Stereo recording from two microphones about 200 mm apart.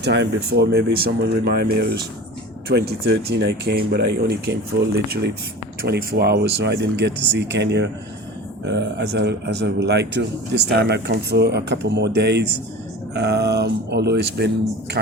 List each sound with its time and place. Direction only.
0.0 s speech: 60° right (ahead or behind)